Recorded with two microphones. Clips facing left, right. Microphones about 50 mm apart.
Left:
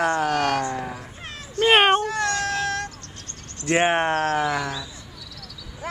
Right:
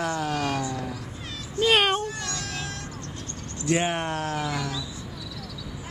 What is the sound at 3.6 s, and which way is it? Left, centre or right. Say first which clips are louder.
Speech: left 5 dB; left.